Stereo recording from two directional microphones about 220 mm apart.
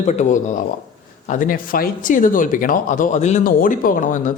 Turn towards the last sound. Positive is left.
turn(degrees=35)  # may be behind; listen again after turning